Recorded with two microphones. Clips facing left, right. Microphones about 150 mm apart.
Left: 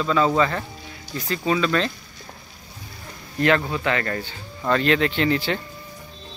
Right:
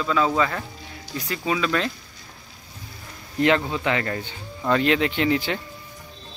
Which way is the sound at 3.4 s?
20° right (ahead or behind).